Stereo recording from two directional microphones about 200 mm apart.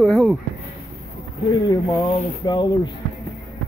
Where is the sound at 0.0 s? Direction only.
Centre (ahead or behind).